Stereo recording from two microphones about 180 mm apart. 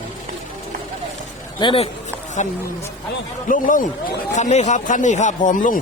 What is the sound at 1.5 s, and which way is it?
Speech, 30° left (ahead or behind).